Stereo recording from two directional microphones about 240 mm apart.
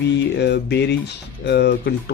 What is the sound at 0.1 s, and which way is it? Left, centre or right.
Speech, left.